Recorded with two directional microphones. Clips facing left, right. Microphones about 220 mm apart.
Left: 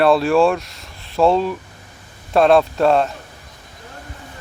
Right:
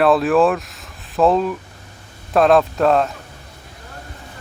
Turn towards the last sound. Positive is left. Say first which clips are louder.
# even
turn(degrees=0)  # may be behind; listen again after turning